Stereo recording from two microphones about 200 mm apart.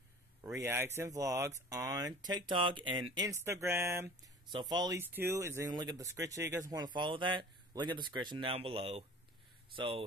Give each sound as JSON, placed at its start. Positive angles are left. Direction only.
{"t": 0.4, "sound": "speech", "side_deg": -15}
{"t": 3.3, "sound": "speech", "side_deg": -15}